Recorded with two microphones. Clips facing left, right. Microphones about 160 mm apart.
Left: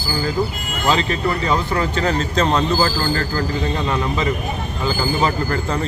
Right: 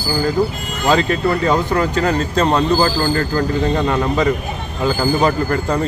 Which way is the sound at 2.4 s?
10° right (ahead or behind).